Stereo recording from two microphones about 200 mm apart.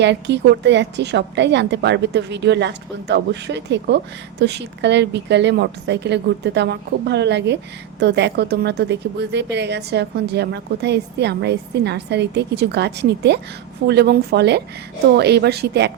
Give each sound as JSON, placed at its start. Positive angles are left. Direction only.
{"t": 0.0, "sound": "a woman's voice", "side_deg": -60}